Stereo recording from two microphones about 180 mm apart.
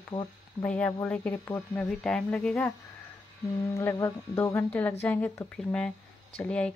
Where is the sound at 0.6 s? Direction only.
5° left (ahead or behind).